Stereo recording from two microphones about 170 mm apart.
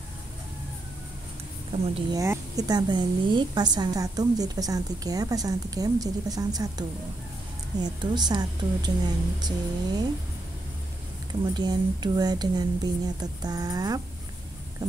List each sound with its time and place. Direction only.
2.0 s a woman's voice: 25° right (ahead or behind)
11.5 s a woman's voice: 25° right (ahead or behind)